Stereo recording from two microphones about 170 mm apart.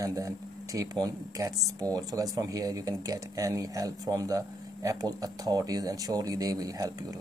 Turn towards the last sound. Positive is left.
turn(degrees=-20)  # may be behind; listen again after turning